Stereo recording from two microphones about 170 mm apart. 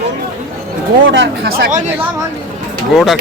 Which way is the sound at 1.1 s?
75° right (ahead or behind).